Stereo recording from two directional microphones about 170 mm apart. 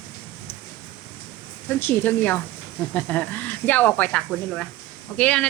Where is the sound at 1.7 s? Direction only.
10° left (ahead or behind).